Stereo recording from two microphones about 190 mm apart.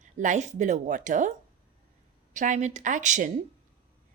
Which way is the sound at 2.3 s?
40° right (ahead or behind).